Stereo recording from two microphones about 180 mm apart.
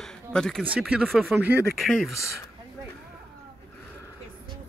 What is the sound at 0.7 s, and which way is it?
Speech, 5° right (ahead or behind).